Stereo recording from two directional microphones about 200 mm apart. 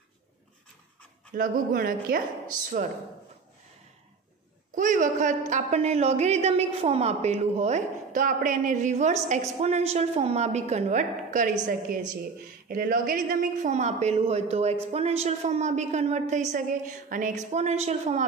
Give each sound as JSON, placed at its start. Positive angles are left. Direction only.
{"t": 1.3, "sound": "a woman's voice", "side_deg": -45}
{"t": 4.7, "sound": "a woman's voice", "side_deg": -40}
{"t": 12.6, "sound": "a woman's voice", "side_deg": -45}